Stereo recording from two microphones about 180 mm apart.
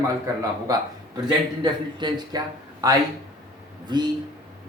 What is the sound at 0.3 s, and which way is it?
Speech, 20° right (ahead or behind).